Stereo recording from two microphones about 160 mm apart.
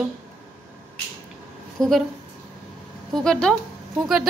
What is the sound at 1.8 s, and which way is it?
Speech, centre (ahead or behind).